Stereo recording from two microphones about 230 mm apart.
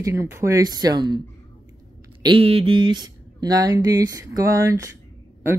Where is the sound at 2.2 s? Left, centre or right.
Right.